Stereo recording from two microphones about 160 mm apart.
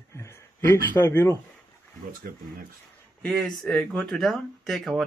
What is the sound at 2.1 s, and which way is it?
Speech, 65° right (ahead or behind).